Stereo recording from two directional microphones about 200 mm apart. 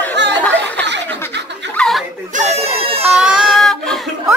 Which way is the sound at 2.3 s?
30° right (ahead or behind).